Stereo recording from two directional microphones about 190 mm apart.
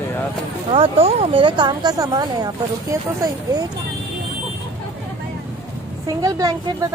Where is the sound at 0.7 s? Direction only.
30° right (ahead or behind).